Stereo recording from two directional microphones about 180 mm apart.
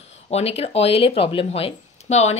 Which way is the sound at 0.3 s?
35° left (ahead or behind).